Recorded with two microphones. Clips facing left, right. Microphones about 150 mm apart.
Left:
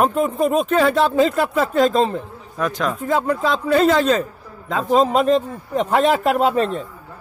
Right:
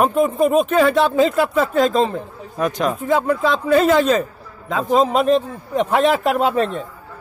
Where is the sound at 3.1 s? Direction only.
5° right (ahead or behind).